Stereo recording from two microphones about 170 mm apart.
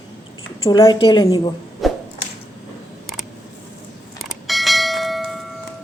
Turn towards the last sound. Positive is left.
turn(degrees=0)  # may be behind; listen again after turning